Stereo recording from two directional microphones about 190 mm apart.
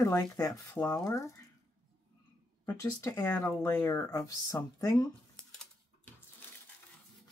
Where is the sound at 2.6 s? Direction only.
15° left (ahead or behind).